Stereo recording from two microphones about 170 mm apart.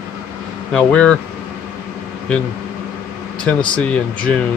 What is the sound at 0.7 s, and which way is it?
Speech, 5° left (ahead or behind).